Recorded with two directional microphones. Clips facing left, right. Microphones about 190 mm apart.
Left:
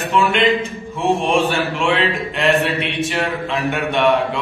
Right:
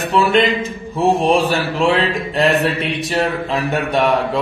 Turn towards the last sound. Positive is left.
turn(degrees=-35)  # may be behind; listen again after turning